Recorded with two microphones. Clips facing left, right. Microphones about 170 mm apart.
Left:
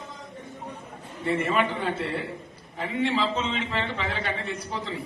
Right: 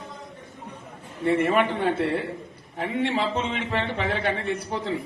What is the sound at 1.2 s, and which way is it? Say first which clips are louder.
A man's voice: right 4 dB; 55° right (ahead or behind).